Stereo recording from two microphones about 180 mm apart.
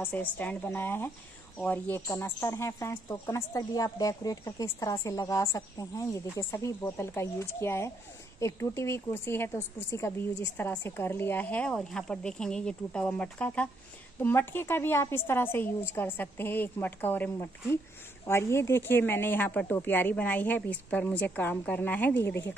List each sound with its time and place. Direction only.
0.0 s speech: 10° left (ahead or behind)